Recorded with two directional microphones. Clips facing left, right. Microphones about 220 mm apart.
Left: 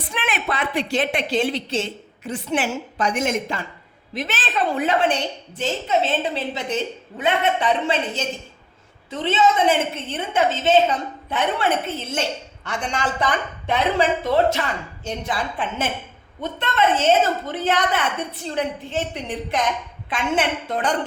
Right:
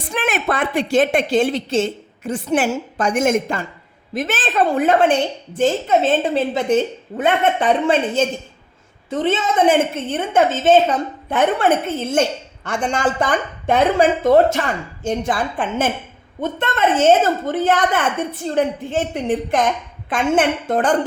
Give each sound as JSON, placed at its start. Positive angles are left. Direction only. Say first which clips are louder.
{"t": 0.1, "sound": "a woman's voice", "louder": "right 6 dB", "side_deg": -45}